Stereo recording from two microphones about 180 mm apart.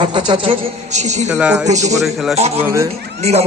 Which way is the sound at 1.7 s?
40° right (ahead or behind).